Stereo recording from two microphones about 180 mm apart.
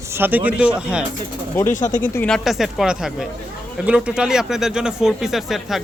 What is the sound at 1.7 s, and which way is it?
Speech, 45° left (ahead or behind).